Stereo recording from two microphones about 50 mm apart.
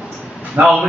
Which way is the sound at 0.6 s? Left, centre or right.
Right.